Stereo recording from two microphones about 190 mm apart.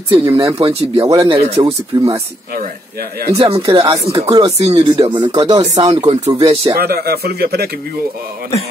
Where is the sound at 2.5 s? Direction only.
55° right (ahead or behind).